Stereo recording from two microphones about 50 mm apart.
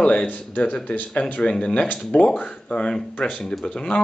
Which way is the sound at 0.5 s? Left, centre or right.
Left.